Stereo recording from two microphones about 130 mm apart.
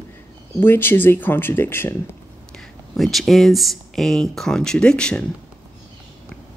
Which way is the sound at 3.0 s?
Centre (ahead or behind).